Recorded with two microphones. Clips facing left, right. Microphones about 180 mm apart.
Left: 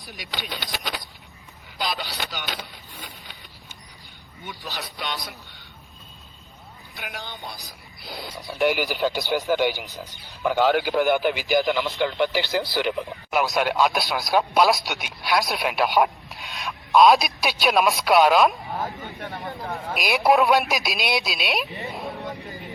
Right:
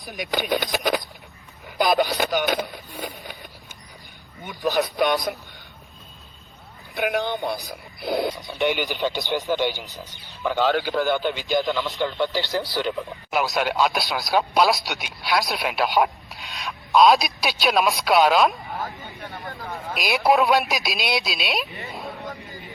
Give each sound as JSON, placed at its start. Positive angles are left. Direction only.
{"t": 0.2, "sound": "speech", "side_deg": -50}
{"t": 4.4, "sound": "speech", "side_deg": -50}
{"t": 6.9, "sound": "speech", "side_deg": -60}
{"t": 8.4, "sound": "a man's voice", "side_deg": 0}
{"t": 13.3, "sound": "speech", "side_deg": 0}
{"t": 21.9, "sound": "a sound", "side_deg": 0}